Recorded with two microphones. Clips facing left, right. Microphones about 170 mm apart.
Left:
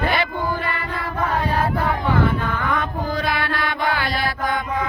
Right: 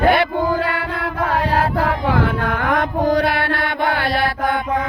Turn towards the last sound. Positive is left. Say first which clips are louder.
# right 4 dB
turn(degrees=-65)  # may be behind; listen again after turning